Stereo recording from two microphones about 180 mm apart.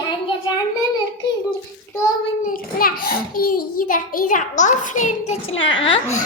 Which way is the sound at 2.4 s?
55° left (ahead or behind).